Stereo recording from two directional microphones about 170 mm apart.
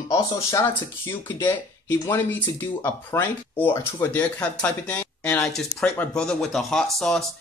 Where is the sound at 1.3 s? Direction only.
10° left (ahead or behind).